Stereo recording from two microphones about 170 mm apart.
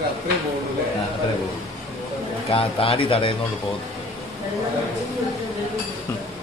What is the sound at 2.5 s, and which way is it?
Speech, 35° left (ahead or behind).